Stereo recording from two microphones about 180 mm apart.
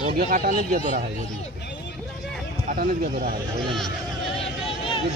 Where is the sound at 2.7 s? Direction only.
55° right (ahead or behind).